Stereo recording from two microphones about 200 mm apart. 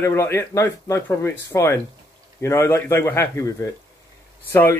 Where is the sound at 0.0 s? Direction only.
15° left (ahead or behind).